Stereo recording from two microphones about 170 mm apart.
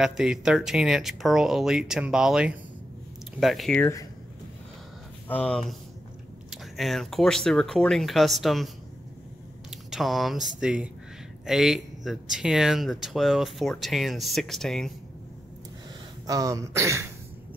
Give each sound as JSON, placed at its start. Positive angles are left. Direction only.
{"t": 0.0, "sound": "speech", "side_deg": -5}
{"t": 3.8, "sound": "speech", "side_deg": 20}
{"t": 5.3, "sound": "speech", "side_deg": 5}
{"t": 9.7, "sound": "speech", "side_deg": 0}
{"t": 16.3, "sound": "throat clearing", "side_deg": -20}